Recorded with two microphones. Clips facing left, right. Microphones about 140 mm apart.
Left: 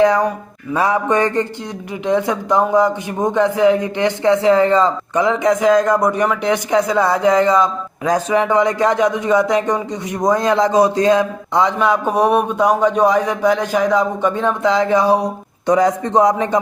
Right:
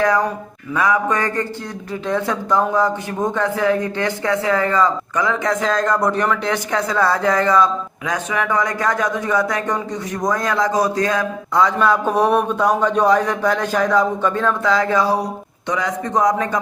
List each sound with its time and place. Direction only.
0.0 s a man's voice: 20° left (ahead or behind)
8.0 s speech: 30° left (ahead or behind)
15.6 s a man's voice: 40° left (ahead or behind)